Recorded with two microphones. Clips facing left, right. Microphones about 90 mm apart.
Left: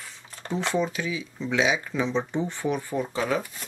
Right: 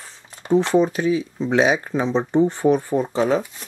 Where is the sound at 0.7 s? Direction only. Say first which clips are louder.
Right 9 dB; 40° right (ahead or behind).